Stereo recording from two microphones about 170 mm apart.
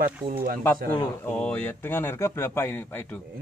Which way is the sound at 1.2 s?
5° left (ahead or behind).